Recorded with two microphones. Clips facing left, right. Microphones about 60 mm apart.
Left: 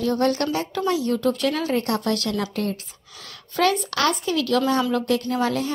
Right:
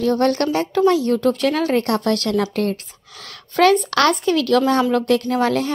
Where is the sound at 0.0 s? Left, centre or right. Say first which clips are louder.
Right 4 dB; right.